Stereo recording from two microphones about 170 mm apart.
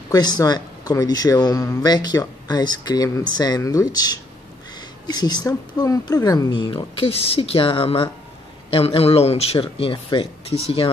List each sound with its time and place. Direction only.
0.1 s speech: 20° left (ahead or behind)